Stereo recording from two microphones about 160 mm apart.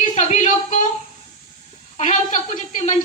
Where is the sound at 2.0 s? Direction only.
45° left (ahead or behind).